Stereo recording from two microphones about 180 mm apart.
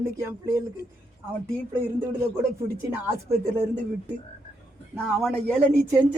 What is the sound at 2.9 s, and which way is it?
Speech, 10° right (ahead or behind).